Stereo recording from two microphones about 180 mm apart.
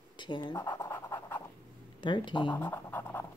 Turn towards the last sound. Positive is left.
turn(degrees=10)  # may be behind; listen again after turning